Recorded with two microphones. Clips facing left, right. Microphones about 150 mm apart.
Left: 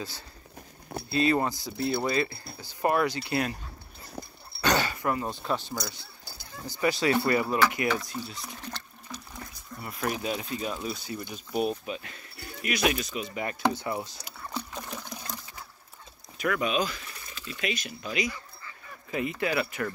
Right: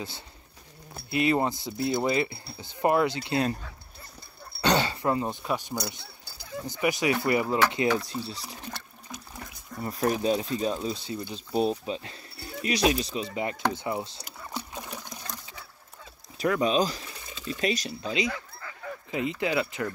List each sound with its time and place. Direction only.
1.1 s speech: 20° right (ahead or behind)
4.6 s speech: 25° right (ahead or behind)
9.8 s speech: 35° right (ahead or behind)
16.3 s speech: 30° right (ahead or behind)
18.3 s goose: 90° right
19.0 s speech: 20° right (ahead or behind)